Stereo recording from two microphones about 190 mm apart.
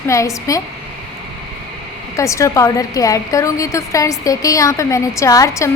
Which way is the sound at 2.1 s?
15° left (ahead or behind).